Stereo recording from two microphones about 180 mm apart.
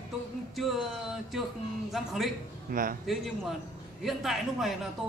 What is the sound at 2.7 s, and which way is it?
Speech, 55° right (ahead or behind).